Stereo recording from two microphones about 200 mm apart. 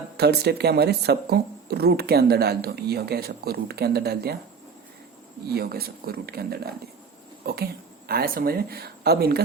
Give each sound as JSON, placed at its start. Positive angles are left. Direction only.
{"t": 0.2, "sound": "speech", "side_deg": -55}
{"t": 5.5, "sound": "speech", "side_deg": -50}